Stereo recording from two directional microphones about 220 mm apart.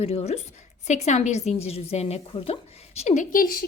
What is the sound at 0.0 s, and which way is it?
A woman's voice, 30° left (ahead or behind).